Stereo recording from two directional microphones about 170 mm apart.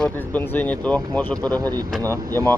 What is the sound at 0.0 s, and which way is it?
Speech, 10° left (ahead or behind).